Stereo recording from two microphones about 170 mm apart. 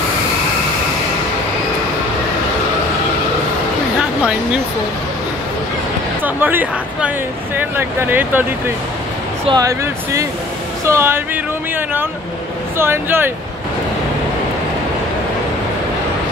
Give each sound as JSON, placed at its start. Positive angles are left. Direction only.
{"t": 6.2, "sound": "speech", "side_deg": -10}
{"t": 9.5, "sound": "speech", "side_deg": -20}
{"t": 12.7, "sound": "speech", "side_deg": -15}